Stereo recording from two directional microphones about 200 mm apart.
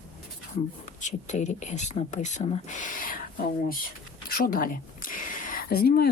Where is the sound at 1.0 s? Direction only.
35° left (ahead or behind).